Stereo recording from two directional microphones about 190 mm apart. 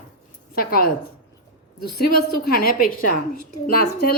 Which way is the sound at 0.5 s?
50° left (ahead or behind).